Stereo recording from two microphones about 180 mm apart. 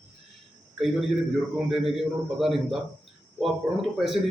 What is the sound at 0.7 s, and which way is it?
A man's voice, centre (ahead or behind).